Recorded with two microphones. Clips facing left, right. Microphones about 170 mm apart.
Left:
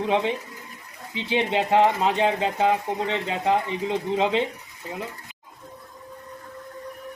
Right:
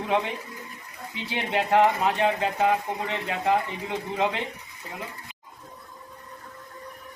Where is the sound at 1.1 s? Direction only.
20° left (ahead or behind).